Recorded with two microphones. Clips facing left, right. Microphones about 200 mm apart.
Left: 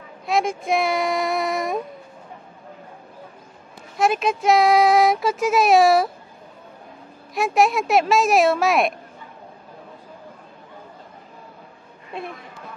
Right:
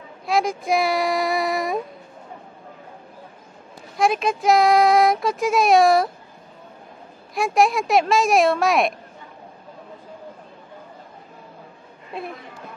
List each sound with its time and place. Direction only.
0.3 s speech: centre (ahead or behind)
3.9 s speech: centre (ahead or behind)
7.3 s speech: centre (ahead or behind)
12.1 s speech: centre (ahead or behind)